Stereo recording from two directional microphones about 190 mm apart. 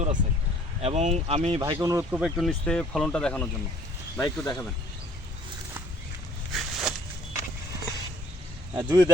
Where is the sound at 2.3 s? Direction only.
5° left (ahead or behind).